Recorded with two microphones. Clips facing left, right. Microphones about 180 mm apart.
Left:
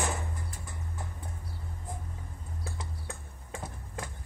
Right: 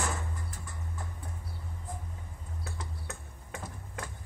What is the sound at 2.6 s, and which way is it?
Music, 30° left (ahead or behind).